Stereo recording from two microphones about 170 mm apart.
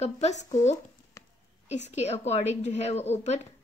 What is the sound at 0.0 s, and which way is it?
Speech, 40° left (ahead or behind).